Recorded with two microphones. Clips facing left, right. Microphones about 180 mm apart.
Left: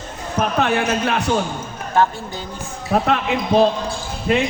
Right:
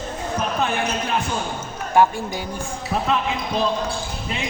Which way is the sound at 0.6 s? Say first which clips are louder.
Left 4 dB; 70° left (ahead or behind).